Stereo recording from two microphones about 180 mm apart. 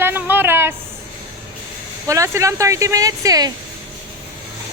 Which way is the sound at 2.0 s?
15° right (ahead or behind).